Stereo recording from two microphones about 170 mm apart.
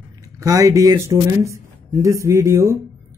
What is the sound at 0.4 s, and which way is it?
Speech, 20° right (ahead or behind).